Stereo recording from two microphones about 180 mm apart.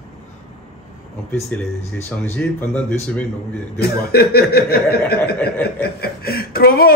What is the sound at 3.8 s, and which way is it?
Speech, 60° left (ahead or behind).